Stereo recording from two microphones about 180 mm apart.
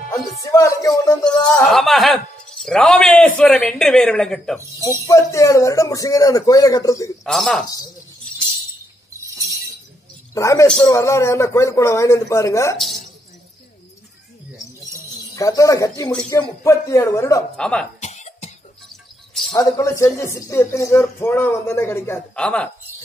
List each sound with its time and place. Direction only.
0.1 s speech: 15° left (ahead or behind)
1.7 s speech: centre (ahead or behind)
4.8 s speech: 15° left (ahead or behind)
7.2 s speech: centre (ahead or behind)
10.3 s speech: 15° left (ahead or behind)
12.7 s speech: centre (ahead or behind)
15.3 s speech: 20° left (ahead or behind)
17.6 s speech: 5° left (ahead or behind)
18.0 s cough: 40° left (ahead or behind)
19.5 s speech: 20° left (ahead or behind)